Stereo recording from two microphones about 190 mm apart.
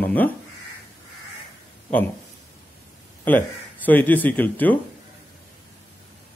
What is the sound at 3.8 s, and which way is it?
Speech, 10° left (ahead or behind).